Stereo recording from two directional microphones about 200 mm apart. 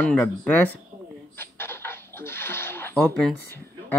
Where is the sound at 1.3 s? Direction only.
10° left (ahead or behind).